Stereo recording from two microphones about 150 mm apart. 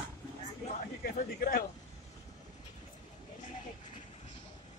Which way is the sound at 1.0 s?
80° left.